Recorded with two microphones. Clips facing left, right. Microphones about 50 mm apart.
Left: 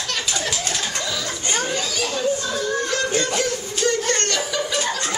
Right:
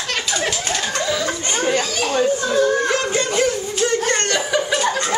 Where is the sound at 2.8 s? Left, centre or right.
Right.